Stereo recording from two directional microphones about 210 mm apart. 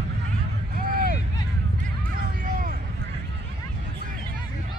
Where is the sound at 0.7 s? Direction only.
45° right (ahead or behind).